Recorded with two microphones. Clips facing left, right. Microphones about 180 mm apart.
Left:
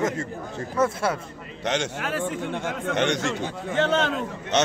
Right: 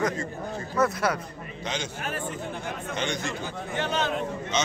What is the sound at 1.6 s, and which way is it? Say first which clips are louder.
A man's voice: left 6 dB; 75° left (ahead or behind).